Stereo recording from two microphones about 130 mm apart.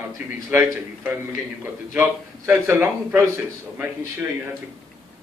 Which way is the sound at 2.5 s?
15° right (ahead or behind).